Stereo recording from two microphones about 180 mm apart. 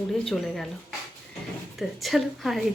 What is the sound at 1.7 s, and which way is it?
Speech, centre (ahead or behind).